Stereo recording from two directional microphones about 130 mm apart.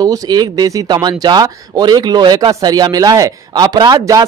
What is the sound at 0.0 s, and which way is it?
Speech, 30° right (ahead or behind).